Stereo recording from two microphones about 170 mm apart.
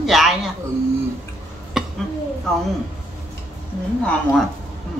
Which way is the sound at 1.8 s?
5° right (ahead or behind).